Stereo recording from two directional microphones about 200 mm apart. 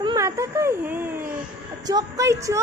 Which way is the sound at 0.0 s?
20° right (ahead or behind).